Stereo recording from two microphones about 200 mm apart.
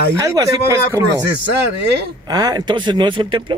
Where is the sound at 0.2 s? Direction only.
15° right (ahead or behind).